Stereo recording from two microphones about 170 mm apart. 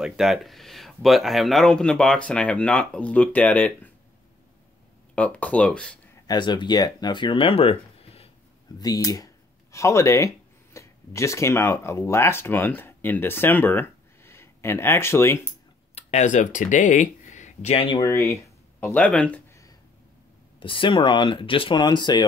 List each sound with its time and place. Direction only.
0.0 s speech: centre (ahead or behind)
5.1 s speech: 5° left (ahead or behind)
6.2 s speech: 25° left (ahead or behind)
8.7 s speech: 20° left (ahead or behind)
15.9 s speech: 40° left (ahead or behind)
18.3 s a sound: 10° left (ahead or behind)
20.5 s speech: 30° left (ahead or behind)